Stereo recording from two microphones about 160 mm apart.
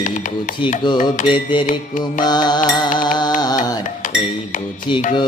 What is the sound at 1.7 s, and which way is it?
Music, 55° left (ahead or behind).